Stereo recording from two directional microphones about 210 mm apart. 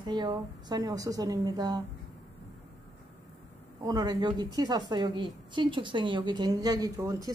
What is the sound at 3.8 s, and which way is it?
A woman's voice, 15° right (ahead or behind).